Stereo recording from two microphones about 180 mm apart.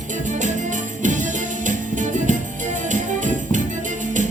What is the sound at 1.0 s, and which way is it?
Music, 45° right (ahead or behind).